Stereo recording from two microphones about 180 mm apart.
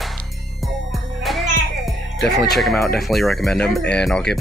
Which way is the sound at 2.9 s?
Centre (ahead or behind).